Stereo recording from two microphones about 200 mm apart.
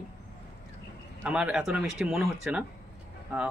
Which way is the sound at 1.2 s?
5° right (ahead or behind).